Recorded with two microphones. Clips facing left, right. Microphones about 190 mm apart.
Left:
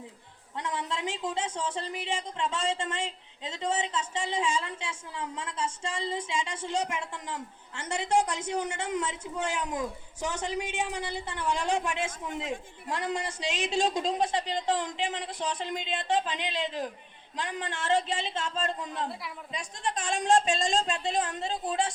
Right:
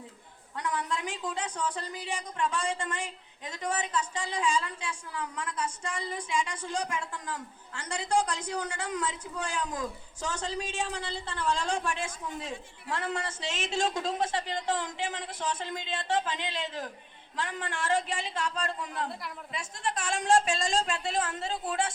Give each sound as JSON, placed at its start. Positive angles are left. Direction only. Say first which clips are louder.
{"t": 0.5, "sound": "a woman's voice", "louder": "right 1 dB", "side_deg": 25}